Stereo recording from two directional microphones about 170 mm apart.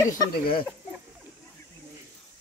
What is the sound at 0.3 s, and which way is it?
Speech, 65° left (ahead or behind).